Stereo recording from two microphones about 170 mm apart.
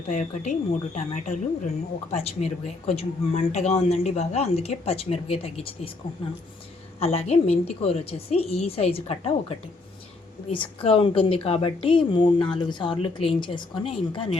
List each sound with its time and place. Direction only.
0.1 s speech: 45° left (ahead or behind)
7.0 s speech: 35° left (ahead or behind)